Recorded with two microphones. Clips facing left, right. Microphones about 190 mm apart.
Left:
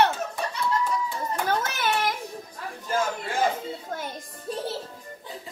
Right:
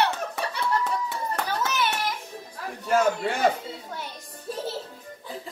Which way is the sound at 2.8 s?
70° right (ahead or behind).